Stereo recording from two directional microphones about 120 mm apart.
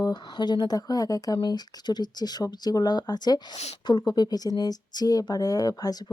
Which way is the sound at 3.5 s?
60° left (ahead or behind).